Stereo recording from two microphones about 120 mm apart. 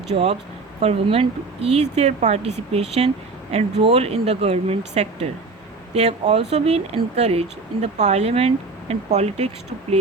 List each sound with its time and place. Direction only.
0.1 s speech: 60° right (ahead or behind)